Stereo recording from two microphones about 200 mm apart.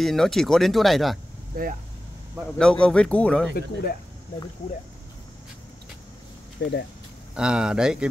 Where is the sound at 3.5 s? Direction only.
50° left (ahead or behind).